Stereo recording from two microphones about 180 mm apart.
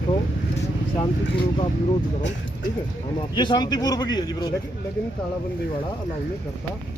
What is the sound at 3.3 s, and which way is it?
A man's voice, 25° left (ahead or behind).